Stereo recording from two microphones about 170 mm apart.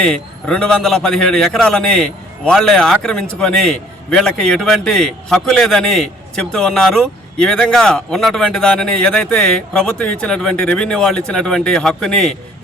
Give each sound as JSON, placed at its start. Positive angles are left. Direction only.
{"t": 0.0, "sound": "a man's voice", "side_deg": 5}